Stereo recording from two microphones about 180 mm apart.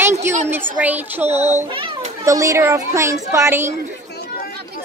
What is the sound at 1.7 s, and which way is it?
Children playing, 30° right (ahead or behind).